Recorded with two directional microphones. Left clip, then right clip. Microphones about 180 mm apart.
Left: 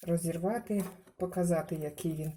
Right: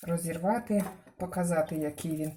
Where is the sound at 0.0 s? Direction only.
35° left (ahead or behind).